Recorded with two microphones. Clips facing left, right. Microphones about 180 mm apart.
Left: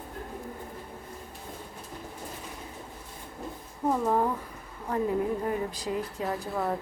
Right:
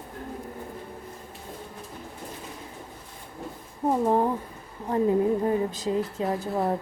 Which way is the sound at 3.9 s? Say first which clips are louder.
Right 3 dB; 25° right (ahead or behind).